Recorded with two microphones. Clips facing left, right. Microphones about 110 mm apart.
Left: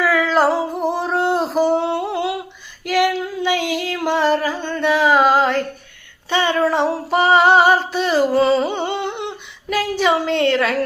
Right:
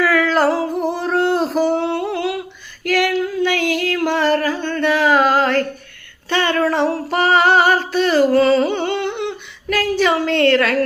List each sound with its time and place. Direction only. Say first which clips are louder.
0.0 s a sound: right 1 dB; 15° left (ahead or behind)
2.8 s female singing: even; 15° left (ahead or behind)
8.7 s humming: right 2 dB; 20° left (ahead or behind)